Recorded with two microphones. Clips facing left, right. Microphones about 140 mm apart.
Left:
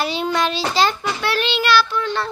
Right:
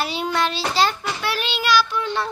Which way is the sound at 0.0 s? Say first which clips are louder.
Left 2 dB; 5° right (ahead or behind).